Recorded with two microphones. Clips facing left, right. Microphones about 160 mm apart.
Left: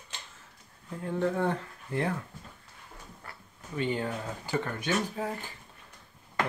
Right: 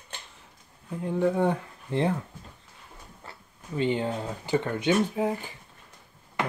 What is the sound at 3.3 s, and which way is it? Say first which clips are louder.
Speech: right 5 dB; 25° right (ahead or behind).